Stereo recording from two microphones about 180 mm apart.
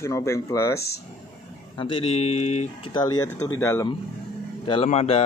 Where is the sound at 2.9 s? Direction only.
25° left (ahead or behind).